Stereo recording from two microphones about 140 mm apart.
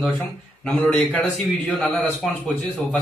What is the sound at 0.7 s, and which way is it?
A man's voice, 5° left (ahead or behind).